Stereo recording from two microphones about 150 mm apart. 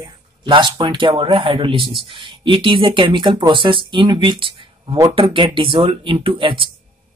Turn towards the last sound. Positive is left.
turn(degrees=-35)  # may be behind; listen again after turning